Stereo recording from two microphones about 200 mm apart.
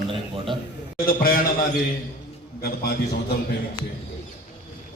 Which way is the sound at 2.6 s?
50° left (ahead or behind).